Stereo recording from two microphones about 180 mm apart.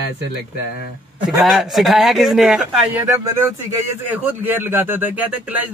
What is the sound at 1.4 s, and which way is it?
A man's voice, centre (ahead or behind).